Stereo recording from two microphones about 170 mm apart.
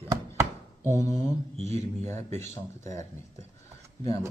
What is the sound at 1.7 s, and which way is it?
Speech, 40° right (ahead or behind).